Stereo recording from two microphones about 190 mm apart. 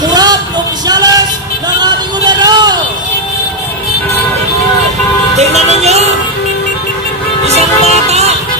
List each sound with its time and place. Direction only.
0.1 s a sound: 20° right (ahead or behind)
0.8 s music: 20° right (ahead or behind)
1.8 s vehicle: 20° right (ahead or behind)
5.4 s music: 35° right (ahead or behind)
7.4 s music: 35° right (ahead or behind)